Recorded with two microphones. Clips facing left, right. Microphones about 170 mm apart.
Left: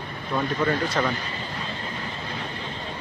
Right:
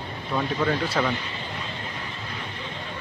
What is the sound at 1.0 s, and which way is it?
Speech, 5° right (ahead or behind).